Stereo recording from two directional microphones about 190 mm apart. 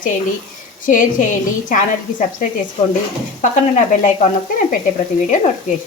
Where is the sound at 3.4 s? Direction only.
40° left (ahead or behind).